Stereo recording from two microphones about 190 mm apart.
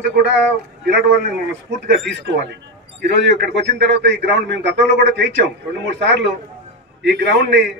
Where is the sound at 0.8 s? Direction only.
60° right (ahead or behind).